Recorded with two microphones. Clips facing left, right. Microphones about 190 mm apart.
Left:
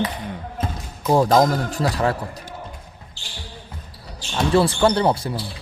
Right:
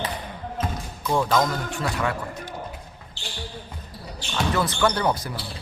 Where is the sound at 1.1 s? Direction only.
35° left (ahead or behind).